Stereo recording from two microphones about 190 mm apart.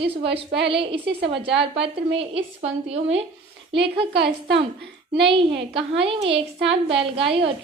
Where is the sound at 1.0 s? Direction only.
65° right (ahead or behind).